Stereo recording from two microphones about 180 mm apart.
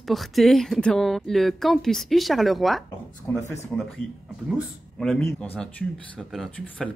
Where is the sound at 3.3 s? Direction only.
15° left (ahead or behind).